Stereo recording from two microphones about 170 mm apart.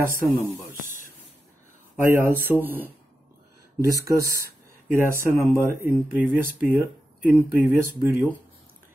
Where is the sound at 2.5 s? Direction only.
10° right (ahead or behind).